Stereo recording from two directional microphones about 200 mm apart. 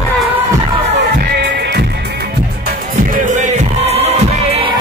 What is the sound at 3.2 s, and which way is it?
Music, 40° right (ahead or behind).